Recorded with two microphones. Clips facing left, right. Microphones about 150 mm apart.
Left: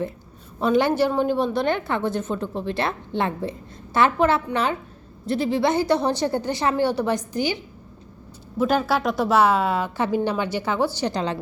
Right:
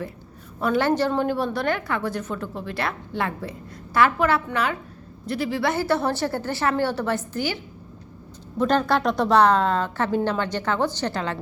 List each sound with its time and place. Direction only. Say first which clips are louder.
0.6 s a woman's voice: left 2 dB; 15° left (ahead or behind)
8.5 s a woman's voice: even; 5° left (ahead or behind)